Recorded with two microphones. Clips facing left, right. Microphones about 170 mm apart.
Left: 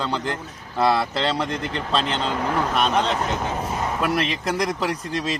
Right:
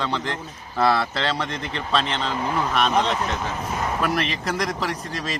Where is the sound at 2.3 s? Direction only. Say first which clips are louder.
Left 1 dB; 55° left (ahead or behind).